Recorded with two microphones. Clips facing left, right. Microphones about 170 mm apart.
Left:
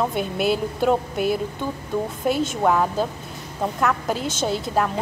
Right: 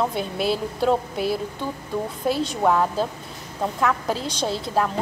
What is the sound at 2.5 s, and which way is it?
A woman's voice, centre (ahead or behind).